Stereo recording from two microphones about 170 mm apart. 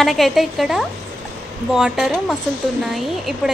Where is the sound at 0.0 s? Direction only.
Centre (ahead or behind).